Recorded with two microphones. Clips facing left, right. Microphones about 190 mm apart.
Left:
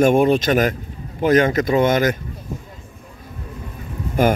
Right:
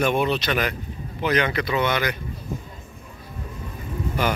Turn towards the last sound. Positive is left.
turn(degrees=50)  # may be behind; listen again after turning